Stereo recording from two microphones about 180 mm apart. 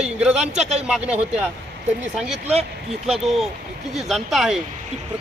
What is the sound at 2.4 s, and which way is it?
Speech, 35° right (ahead or behind).